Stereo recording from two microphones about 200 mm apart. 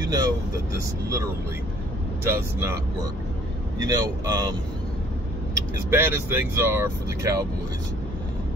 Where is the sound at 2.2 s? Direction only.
15° right (ahead or behind).